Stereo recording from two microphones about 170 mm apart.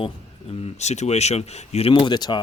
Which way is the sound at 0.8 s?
40° left (ahead or behind).